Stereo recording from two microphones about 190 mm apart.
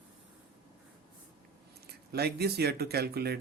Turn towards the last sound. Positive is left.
turn(degrees=-55)  # may be behind; listen again after turning